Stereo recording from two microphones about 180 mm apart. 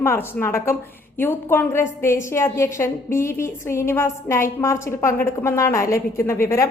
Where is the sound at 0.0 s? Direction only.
15° left (ahead or behind).